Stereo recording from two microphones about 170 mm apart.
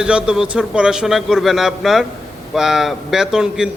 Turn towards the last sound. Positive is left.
turn(degrees=-5)  # may be behind; listen again after turning